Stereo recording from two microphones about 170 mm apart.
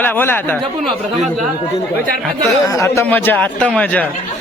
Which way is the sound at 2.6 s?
20° left (ahead or behind).